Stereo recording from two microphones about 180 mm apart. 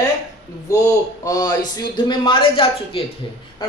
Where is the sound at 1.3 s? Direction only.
20° left (ahead or behind).